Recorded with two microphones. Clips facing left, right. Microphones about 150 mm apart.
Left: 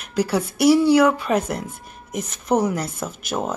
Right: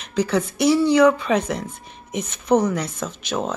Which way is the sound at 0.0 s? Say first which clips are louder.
Right 1 dB; 10° left (ahead or behind).